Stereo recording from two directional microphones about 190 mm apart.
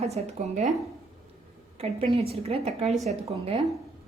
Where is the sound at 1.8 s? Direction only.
30° right (ahead or behind).